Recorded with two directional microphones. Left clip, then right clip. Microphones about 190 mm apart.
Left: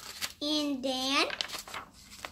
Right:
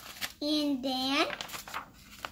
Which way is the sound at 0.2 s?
10° left (ahead or behind).